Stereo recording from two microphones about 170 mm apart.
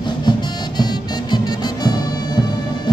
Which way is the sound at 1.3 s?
25° left (ahead or behind).